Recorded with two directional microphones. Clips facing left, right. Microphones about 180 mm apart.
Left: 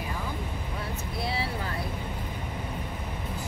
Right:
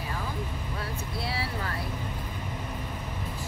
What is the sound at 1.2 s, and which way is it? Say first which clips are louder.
Vehicle: left 3 dB; 20° left (ahead or behind).